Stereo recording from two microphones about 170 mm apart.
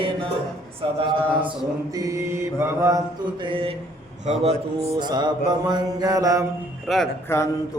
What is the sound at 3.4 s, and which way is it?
Speech, 30° right (ahead or behind).